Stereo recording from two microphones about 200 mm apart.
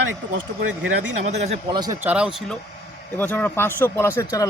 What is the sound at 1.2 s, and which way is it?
Speech, 35° right (ahead or behind).